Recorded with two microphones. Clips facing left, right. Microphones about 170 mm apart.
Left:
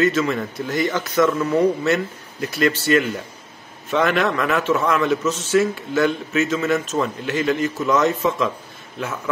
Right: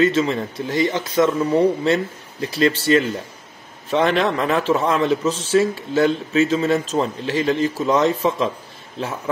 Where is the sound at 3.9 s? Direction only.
30° right (ahead or behind).